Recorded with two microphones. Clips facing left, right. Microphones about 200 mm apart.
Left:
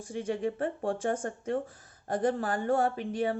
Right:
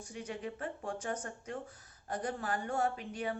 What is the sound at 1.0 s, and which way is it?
Speech, 50° left (ahead or behind).